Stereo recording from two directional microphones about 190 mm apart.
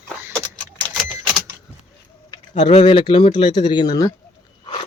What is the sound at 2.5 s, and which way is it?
Speech, 35° left (ahead or behind).